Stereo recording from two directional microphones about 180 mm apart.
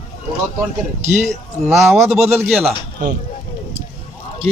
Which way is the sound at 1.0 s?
40° right (ahead or behind).